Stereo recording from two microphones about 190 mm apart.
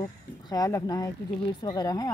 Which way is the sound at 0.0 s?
20° left (ahead or behind).